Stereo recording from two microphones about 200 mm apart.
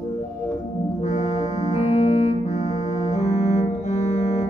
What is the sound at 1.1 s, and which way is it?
Music, 35° left (ahead or behind).